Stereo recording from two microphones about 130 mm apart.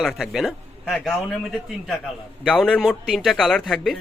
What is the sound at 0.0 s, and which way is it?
Speech, centre (ahead or behind).